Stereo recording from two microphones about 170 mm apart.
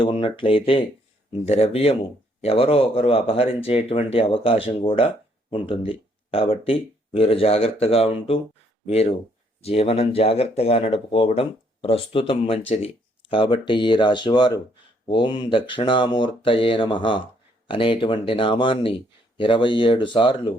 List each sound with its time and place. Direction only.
0.0 s speech: 30° left (ahead or behind)